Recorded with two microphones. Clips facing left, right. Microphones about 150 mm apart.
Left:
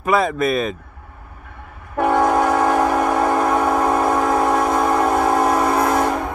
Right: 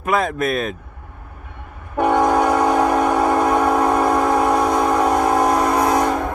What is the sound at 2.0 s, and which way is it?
Train, centre (ahead or behind).